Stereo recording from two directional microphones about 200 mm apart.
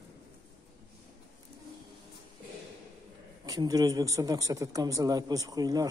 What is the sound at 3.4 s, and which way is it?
Speech, 20° right (ahead or behind).